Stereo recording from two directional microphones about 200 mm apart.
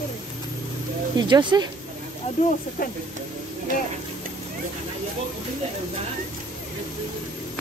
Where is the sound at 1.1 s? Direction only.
20° right (ahead or behind).